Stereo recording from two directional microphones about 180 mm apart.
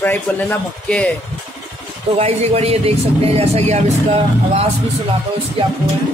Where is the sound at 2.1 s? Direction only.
35° right (ahead or behind).